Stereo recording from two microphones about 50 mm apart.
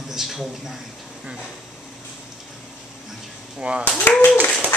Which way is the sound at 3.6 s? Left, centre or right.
Right.